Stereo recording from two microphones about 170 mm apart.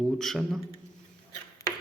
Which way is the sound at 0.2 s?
Centre (ahead or behind).